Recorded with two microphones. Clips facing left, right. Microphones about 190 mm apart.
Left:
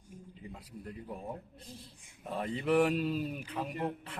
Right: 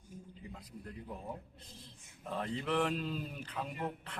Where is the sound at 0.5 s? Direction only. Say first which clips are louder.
Left 3 dB; 10° left (ahead or behind).